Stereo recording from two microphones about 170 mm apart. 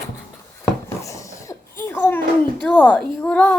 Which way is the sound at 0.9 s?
20° left (ahead or behind).